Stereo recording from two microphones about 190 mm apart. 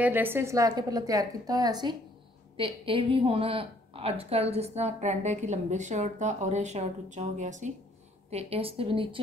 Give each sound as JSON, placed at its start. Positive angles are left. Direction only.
{"t": 0.0, "sound": "a woman's voice", "side_deg": -10}